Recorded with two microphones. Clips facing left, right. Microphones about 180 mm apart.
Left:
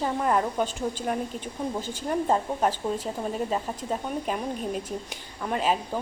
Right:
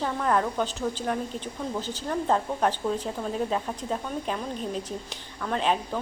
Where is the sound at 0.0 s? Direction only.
10° left (ahead or behind).